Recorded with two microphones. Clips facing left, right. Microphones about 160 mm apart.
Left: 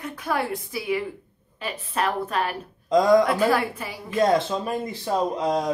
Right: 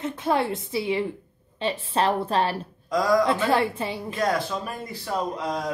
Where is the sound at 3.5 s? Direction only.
25° right (ahead or behind).